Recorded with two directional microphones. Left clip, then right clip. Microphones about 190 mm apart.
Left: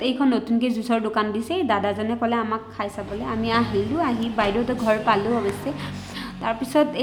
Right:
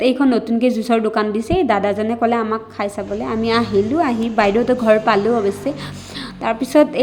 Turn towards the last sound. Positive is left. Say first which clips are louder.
# right 7 dB
turn(degrees=-20)  # may be behind; listen again after turning